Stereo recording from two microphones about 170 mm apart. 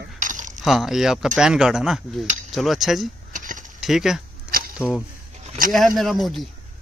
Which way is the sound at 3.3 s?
50° right (ahead or behind).